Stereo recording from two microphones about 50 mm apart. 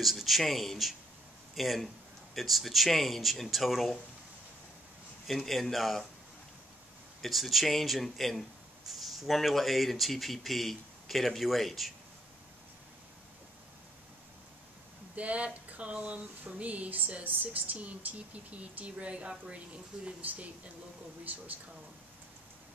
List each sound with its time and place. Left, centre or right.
0.0 s speech: centre
5.2 s speech: centre
7.2 s speech: centre
15.1 s speech: right